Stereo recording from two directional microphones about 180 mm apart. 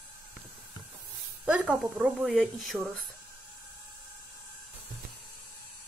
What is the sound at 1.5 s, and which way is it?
Speech, 5° right (ahead or behind).